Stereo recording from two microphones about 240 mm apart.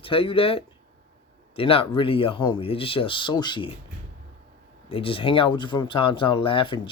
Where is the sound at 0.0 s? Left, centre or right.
Left.